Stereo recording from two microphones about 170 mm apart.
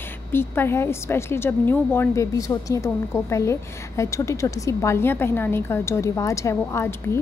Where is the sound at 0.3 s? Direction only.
15° left (ahead or behind).